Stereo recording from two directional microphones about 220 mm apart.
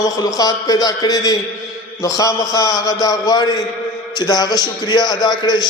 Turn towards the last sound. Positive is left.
turn(degrees=20)  # may be behind; listen again after turning